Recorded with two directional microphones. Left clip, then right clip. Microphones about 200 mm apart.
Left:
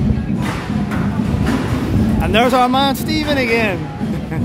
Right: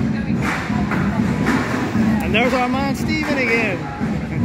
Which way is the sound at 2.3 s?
25° left (ahead or behind).